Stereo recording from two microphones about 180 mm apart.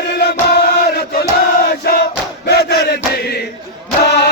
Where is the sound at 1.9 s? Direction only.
60° left (ahead or behind).